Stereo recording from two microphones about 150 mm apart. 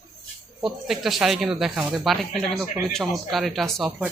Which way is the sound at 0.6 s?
Centre (ahead or behind).